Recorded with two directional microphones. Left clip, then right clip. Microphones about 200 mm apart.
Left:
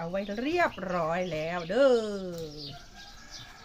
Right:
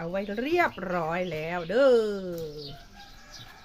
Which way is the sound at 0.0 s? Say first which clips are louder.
Right 1 dB; 30° right (ahead or behind).